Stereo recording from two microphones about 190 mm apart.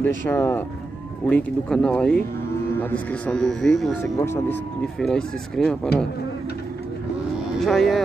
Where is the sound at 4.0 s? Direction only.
15° left (ahead or behind).